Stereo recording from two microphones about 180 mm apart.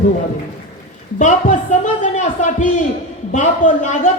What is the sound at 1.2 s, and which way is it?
A man's voice, 45° left (ahead or behind).